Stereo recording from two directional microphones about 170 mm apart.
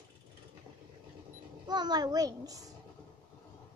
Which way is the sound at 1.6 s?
25° right (ahead or behind).